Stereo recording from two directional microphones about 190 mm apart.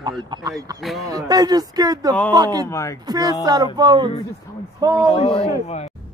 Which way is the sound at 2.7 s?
15° left (ahead or behind).